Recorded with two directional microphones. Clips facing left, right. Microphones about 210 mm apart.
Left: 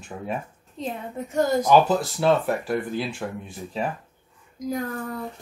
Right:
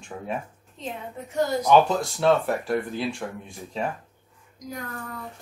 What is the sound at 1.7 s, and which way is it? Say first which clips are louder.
Speech: right 2 dB; centre (ahead or behind).